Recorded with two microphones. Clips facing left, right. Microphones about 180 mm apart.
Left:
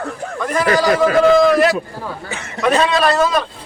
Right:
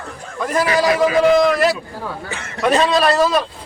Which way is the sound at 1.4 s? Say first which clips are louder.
Left 3 dB; centre (ahead or behind).